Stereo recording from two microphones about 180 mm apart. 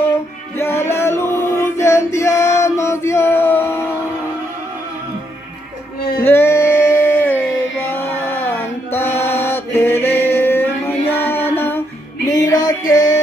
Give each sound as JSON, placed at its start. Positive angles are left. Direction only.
{"t": 0.8, "sound": "male singing", "side_deg": 15}
{"t": 6.2, "sound": "music", "side_deg": 15}
{"t": 9.4, "sound": "a sound", "side_deg": 15}
{"t": 12.3, "sound": "music", "side_deg": 20}